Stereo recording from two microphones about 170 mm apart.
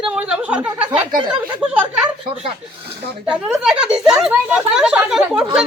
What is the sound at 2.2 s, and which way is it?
Speech, 35° right (ahead or behind).